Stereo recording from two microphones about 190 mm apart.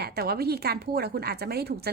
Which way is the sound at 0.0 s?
55° right (ahead or behind).